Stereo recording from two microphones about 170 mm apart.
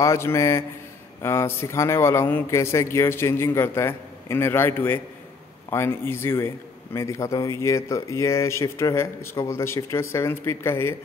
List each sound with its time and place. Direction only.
0.0 s a man's voice: 15° left (ahead or behind)